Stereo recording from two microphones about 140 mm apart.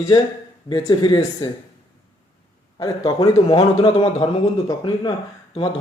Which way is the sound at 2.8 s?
25° left (ahead or behind).